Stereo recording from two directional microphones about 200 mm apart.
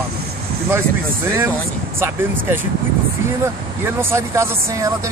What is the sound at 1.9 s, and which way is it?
Speech, 10° right (ahead or behind).